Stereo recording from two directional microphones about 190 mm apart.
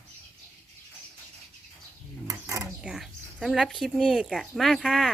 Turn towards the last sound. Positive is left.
turn(degrees=0)  # may be behind; listen again after turning